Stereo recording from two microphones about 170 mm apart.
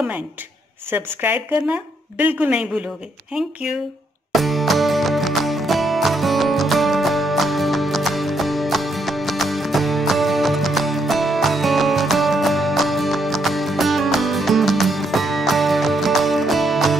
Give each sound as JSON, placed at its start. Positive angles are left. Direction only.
{"t": 0.9, "sound": "speech", "side_deg": -10}
{"t": 4.3, "sound": "music", "side_deg": 0}